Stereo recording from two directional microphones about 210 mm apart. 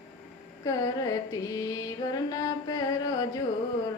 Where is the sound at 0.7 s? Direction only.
15° left (ahead or behind).